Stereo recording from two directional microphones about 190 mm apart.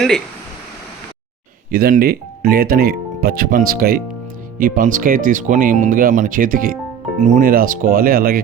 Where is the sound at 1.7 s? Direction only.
50° right (ahead or behind).